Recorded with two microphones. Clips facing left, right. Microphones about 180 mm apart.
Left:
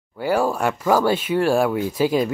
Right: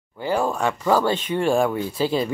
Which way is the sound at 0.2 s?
10° left (ahead or behind).